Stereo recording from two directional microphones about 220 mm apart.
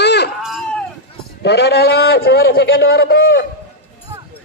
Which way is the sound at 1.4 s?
50° left (ahead or behind).